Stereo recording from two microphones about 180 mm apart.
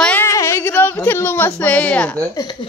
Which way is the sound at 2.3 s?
20° left (ahead or behind).